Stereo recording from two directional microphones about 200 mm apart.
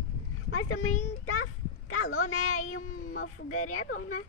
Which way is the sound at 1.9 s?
90° left.